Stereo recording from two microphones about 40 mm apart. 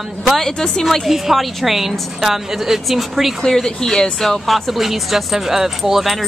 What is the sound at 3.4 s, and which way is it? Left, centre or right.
Speech, centre.